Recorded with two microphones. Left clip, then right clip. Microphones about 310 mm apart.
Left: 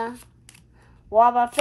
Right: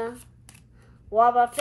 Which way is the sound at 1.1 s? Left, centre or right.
Left.